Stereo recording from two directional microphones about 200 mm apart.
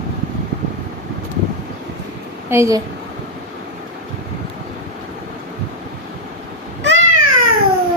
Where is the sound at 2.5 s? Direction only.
15° right (ahead or behind).